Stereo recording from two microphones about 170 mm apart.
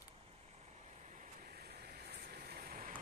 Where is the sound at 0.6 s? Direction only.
45° right (ahead or behind).